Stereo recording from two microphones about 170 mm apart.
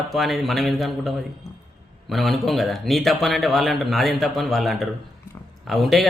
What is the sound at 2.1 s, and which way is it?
A man's voice, centre (ahead or behind).